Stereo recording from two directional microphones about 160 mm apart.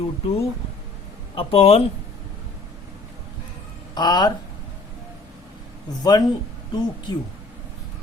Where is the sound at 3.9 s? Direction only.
25° left (ahead or behind).